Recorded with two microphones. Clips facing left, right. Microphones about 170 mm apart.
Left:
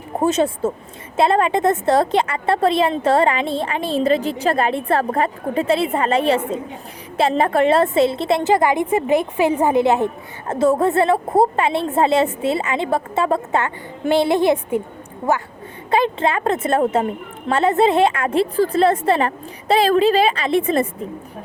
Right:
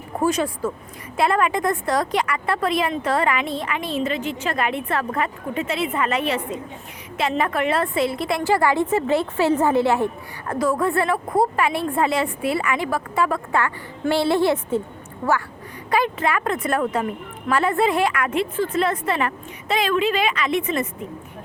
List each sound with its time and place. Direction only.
0.2 s a woman's voice: 25° left (ahead or behind)
15.9 s a woman's voice: 25° left (ahead or behind)